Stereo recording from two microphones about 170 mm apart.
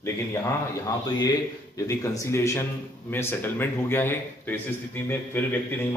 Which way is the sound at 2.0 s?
15° left (ahead or behind).